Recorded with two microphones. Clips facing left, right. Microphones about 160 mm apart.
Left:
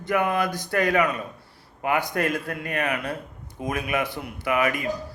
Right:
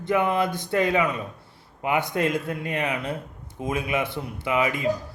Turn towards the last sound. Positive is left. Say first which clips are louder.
# even
turn(degrees=-20)  # may be behind; listen again after turning